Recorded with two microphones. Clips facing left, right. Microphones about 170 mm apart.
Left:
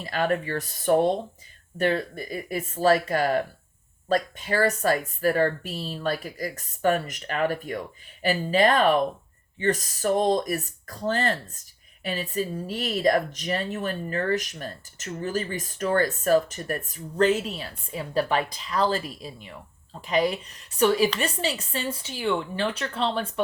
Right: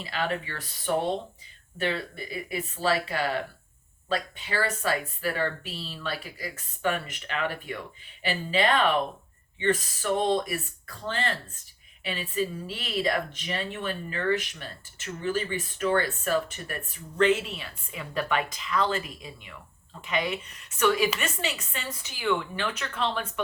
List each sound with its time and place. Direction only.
0.0 s speech: 45° left (ahead or behind)